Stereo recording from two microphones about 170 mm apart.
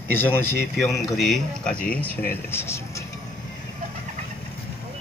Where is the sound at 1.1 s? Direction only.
Centre (ahead or behind).